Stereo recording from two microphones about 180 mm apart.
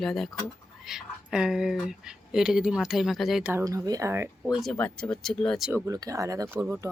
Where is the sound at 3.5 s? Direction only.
15° right (ahead or behind).